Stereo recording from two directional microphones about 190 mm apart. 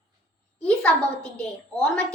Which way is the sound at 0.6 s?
5° left (ahead or behind).